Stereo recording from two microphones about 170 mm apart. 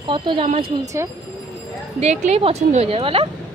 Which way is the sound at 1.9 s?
40° right (ahead or behind).